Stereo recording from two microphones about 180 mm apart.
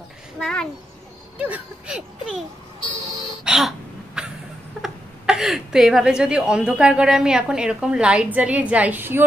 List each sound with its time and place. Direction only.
0.4 s speech: 5° left (ahead or behind)
1.4 s speech: 5° right (ahead or behind)
3.4 s cough: centre (ahead or behind)
4.8 s speech: centre (ahead or behind)